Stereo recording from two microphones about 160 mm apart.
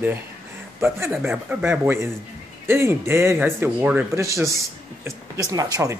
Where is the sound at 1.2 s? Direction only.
10° right (ahead or behind).